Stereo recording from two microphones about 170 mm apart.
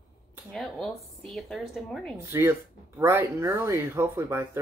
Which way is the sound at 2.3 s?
15° right (ahead or behind).